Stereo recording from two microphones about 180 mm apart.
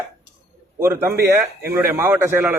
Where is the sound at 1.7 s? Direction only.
15° right (ahead or behind).